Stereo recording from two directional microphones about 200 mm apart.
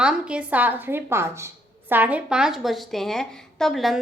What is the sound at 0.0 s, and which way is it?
A woman's voice, 5° right (ahead or behind).